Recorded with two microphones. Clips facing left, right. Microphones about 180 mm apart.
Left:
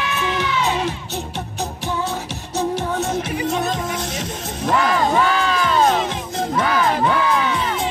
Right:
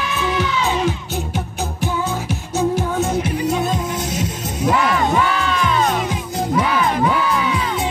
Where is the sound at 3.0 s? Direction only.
5° right (ahead or behind).